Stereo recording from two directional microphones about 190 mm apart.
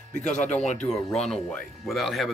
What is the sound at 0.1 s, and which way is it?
Speech, 40° left (ahead or behind).